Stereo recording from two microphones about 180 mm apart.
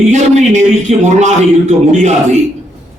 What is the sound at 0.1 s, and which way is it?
A man's voice, 40° right (ahead or behind).